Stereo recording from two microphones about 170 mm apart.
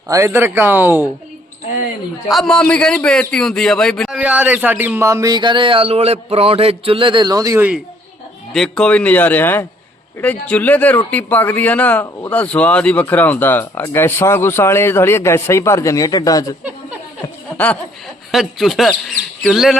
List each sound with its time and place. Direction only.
0.1 s a man's voice: 15° right (ahead or behind)
2.3 s a man's voice: 5° left (ahead or behind)
4.2 s speech: 10° right (ahead or behind)
8.5 s speech: 5° left (ahead or behind); by 16.6 s 20° left (ahead or behind)
18.3 s a man's voice: centre (ahead or behind)